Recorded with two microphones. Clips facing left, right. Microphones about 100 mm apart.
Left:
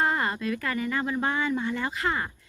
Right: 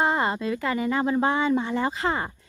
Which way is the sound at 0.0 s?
20° right (ahead or behind).